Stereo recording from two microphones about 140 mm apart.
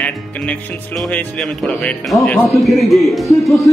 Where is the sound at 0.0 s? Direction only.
5° left (ahead or behind).